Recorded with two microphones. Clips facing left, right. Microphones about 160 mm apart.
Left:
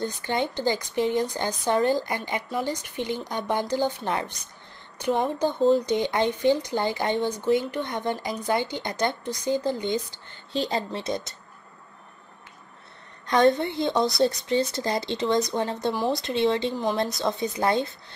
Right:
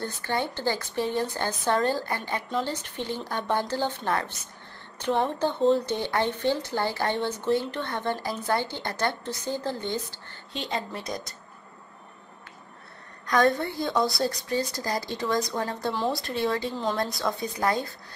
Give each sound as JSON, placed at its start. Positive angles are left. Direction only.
{"t": 0.0, "sound": "speech", "side_deg": 20}
{"t": 10.5, "sound": "a woman's voice", "side_deg": 35}
{"t": 13.3, "sound": "a woman's voice", "side_deg": 20}